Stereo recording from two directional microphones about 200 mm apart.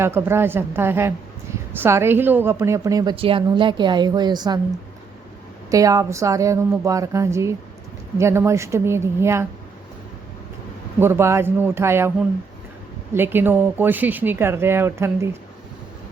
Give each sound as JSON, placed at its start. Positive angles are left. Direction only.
{"t": 0.0, "sound": "a woman's voice", "side_deg": -10}
{"t": 5.7, "sound": "speech", "side_deg": -15}
{"t": 11.0, "sound": "speech", "side_deg": -10}
{"t": 13.1, "sound": "speech", "side_deg": -10}